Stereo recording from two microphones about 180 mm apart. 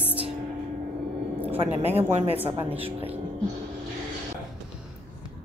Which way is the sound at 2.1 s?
35° right (ahead or behind).